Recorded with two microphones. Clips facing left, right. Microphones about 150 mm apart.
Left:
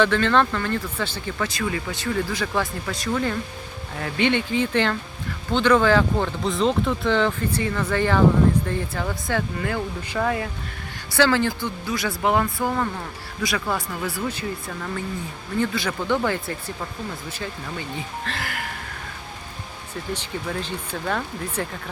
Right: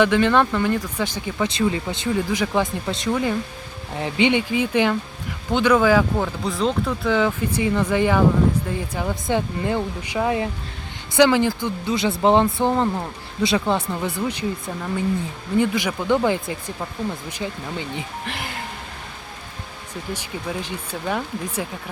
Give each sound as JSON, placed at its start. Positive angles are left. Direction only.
{"t": 0.0, "sound": "speech", "side_deg": -15}
{"t": 15.5, "sound": "speech", "side_deg": -15}
{"t": 20.1, "sound": "speech", "side_deg": -10}